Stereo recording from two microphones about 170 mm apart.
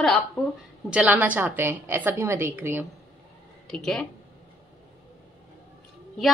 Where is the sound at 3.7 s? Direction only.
5° left (ahead or behind).